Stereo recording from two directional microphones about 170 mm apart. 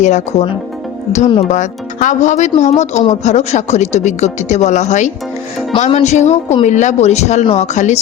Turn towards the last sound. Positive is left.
turn(degrees=45)  # may be behind; listen again after turning